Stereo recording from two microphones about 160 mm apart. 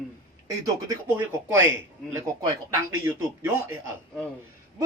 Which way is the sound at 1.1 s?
15° right (ahead or behind).